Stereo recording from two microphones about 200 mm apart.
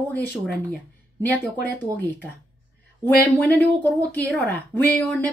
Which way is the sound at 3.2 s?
10° left (ahead or behind).